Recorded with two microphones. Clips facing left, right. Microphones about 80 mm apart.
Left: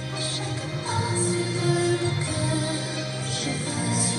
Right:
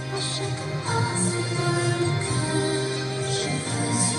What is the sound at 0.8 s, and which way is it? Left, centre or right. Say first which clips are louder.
Music: even; right.